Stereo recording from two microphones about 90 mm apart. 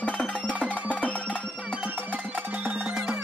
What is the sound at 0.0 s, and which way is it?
Music, 15° left (ahead or behind).